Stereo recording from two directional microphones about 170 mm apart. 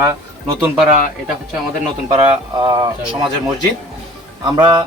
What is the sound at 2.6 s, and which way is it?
Speech, 25° right (ahead or behind).